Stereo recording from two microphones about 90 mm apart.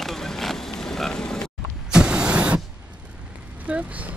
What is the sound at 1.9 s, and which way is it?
Vehicle, 10° right (ahead or behind).